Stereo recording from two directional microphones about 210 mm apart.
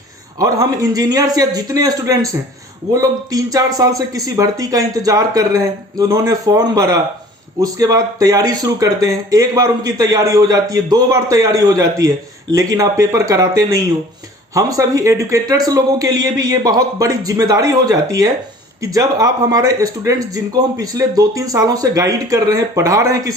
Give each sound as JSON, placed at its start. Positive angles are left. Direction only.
{"t": 0.3, "sound": "speech", "side_deg": -15}